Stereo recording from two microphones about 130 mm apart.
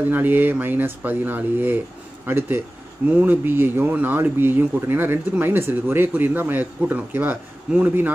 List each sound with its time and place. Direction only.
0.1 s speech: 15° right (ahead or behind)